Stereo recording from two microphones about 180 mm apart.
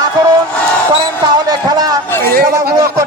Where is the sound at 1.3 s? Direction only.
20° right (ahead or behind).